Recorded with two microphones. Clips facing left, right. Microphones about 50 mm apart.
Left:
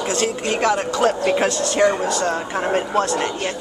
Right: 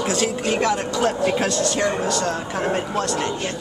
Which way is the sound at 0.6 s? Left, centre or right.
Centre.